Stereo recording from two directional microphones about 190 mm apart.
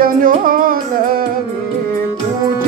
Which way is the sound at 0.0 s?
45° right (ahead or behind).